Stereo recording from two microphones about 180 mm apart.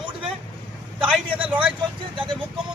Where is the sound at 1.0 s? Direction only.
10° right (ahead or behind).